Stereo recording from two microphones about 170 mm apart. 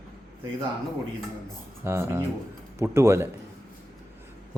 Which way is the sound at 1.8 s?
15° right (ahead or behind).